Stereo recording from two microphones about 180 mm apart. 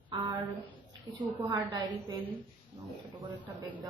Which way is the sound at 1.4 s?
25° right (ahead or behind).